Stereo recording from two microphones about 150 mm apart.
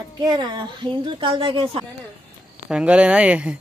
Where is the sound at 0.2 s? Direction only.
25° right (ahead or behind).